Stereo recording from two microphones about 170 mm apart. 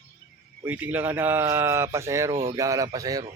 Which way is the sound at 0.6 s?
10° right (ahead or behind).